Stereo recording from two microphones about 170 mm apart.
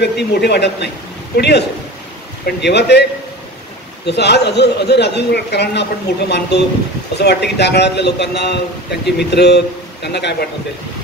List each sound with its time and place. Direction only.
0.0 s a man's voice: 75° left (ahead or behind)